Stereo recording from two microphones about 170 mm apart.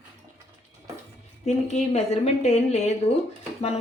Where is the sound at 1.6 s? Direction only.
45° left (ahead or behind).